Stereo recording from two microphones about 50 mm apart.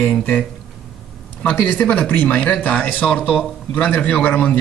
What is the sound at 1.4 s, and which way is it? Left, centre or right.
A man's voice, left.